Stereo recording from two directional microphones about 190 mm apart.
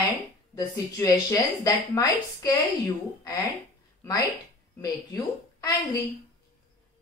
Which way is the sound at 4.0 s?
20° left (ahead or behind).